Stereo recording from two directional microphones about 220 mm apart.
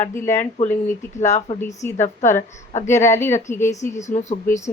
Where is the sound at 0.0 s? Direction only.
10° left (ahead or behind).